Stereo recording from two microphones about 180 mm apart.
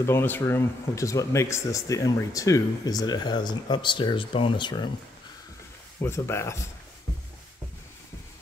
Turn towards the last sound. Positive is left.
turn(degrees=15)  # may be behind; listen again after turning